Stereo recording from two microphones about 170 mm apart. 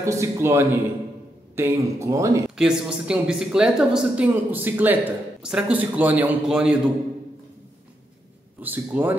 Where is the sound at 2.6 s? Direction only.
5° right (ahead or behind).